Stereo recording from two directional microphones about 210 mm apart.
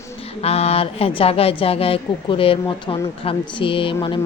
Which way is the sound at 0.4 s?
30° left (ahead or behind).